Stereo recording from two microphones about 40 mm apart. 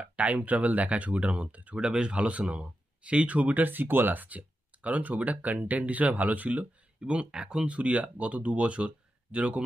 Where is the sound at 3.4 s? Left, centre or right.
Right.